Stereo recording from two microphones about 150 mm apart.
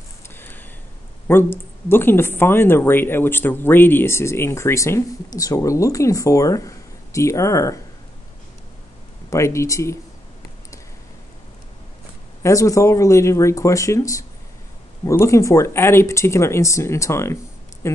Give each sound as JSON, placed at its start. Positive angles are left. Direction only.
{"t": 0.3, "sound": "a sound", "side_deg": 15}
{"t": 1.2, "sound": "speech", "side_deg": 15}
{"t": 9.3, "sound": "speech", "side_deg": 20}
{"t": 12.4, "sound": "speech", "side_deg": 20}